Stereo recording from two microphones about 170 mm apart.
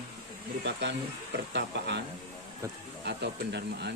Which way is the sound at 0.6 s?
90° right.